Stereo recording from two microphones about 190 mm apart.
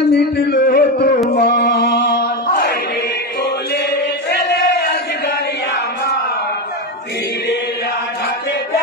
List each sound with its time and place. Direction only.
0.1 s a sound: 60° left (ahead or behind)
1.3 s mantra: 60° left (ahead or behind)
3.4 s chant: 60° left (ahead or behind)